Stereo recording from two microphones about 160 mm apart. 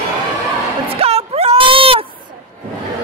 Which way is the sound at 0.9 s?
40° right (ahead or behind).